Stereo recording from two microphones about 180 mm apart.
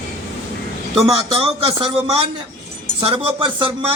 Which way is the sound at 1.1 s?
30° right (ahead or behind).